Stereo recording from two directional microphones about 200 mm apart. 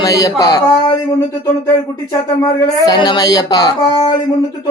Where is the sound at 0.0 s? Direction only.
15° left (ahead or behind).